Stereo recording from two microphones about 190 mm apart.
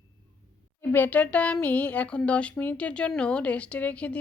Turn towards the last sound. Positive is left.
turn(degrees=5)  # may be behind; listen again after turning